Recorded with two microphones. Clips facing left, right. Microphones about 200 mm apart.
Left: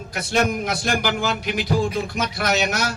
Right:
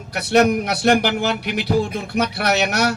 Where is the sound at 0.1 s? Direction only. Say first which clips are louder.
Right 6 dB; 60° right (ahead or behind).